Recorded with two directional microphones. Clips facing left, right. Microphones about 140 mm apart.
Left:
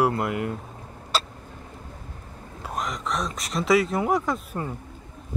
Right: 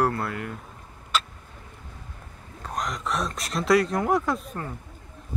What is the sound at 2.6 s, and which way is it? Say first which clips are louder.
Speech: even; 5° left (ahead or behind).